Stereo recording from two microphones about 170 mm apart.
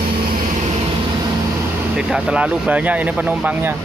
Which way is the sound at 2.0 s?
5° right (ahead or behind).